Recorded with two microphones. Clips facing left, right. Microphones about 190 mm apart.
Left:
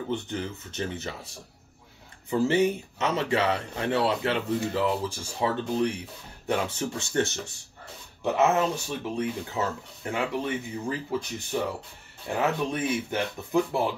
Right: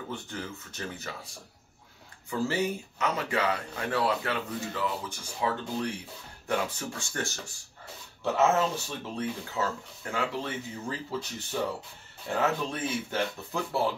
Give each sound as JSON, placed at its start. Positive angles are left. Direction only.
{"t": 0.1, "sound": "speech", "side_deg": 20}
{"t": 12.4, "sound": "speech", "side_deg": 15}